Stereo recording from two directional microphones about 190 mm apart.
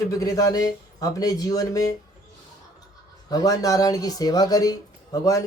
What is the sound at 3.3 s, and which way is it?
Speech, 20° left (ahead or behind).